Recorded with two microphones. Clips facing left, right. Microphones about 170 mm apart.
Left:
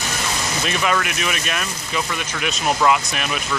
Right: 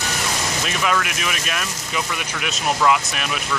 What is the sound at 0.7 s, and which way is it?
Speech, centre (ahead or behind).